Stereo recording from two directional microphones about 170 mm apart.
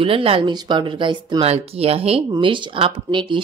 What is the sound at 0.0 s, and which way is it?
Speech, 35° right (ahead or behind).